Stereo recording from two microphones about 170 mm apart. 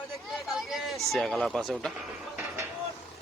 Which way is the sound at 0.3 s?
Centre (ahead or behind).